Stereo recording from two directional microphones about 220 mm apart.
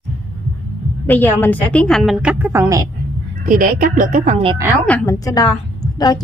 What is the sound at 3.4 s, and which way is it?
Speech, 40° right (ahead or behind).